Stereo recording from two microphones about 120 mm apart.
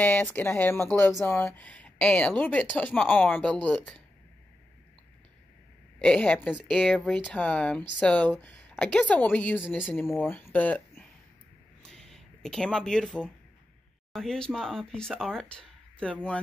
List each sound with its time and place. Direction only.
0.0 s speech: 15° left (ahead or behind)
5.9 s speech: 10° left (ahead or behind)
11.8 s a sound: 5° left (ahead or behind)
14.1 s speech: 5° left (ahead or behind)